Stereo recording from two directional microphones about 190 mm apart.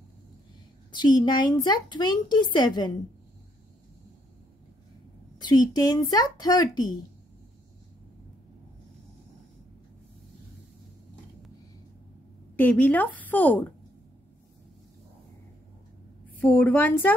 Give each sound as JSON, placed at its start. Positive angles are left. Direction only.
{"t": 0.9, "sound": "a woman's voice", "side_deg": 20}
{"t": 5.4, "sound": "a woman's voice", "side_deg": 20}
{"t": 12.5, "sound": "a woman's voice", "side_deg": 10}
{"t": 16.3, "sound": "a woman's voice", "side_deg": 10}